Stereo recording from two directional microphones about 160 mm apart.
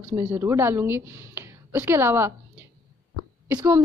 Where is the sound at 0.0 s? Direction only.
20° right (ahead or behind).